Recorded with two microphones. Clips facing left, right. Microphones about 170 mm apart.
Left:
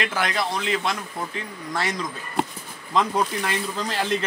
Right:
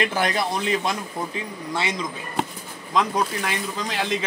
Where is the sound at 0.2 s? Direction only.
40° right (ahead or behind).